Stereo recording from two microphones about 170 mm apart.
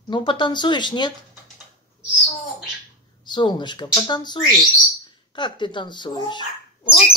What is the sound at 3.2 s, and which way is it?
A child's voice, 25° left (ahead or behind).